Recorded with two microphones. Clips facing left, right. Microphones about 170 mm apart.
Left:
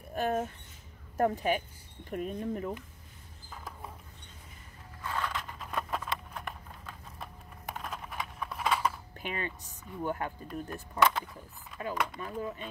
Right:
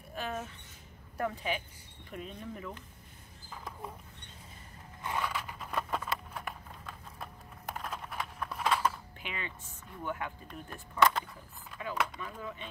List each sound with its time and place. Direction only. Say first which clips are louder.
0.1 s speech: left 7 dB; 45° left (ahead or behind)
5.0 s a sound: even; 10° right (ahead or behind)
9.2 s speech: left 6 dB; 45° left (ahead or behind)
10.5 s speech: left 6 dB; centre (ahead or behind)
12.2 s speech: left 5 dB; 40° left (ahead or behind)